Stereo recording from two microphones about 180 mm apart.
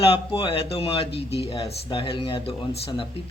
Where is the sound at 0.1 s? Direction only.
30° left (ahead or behind).